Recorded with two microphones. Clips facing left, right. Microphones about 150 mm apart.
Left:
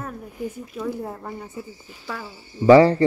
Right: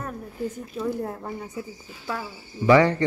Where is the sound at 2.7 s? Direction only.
30° left (ahead or behind).